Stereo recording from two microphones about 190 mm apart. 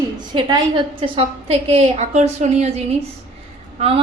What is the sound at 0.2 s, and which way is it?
A woman's voice, 20° right (ahead or behind).